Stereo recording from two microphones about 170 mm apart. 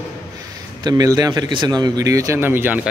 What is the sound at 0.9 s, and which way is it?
Speech, 20° right (ahead or behind).